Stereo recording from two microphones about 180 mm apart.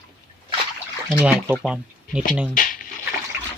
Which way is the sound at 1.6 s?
5° right (ahead or behind).